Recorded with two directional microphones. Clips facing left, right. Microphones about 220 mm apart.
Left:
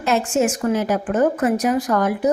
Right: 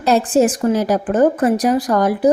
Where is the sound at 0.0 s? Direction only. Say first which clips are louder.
Right 5 dB; 35° right (ahead or behind).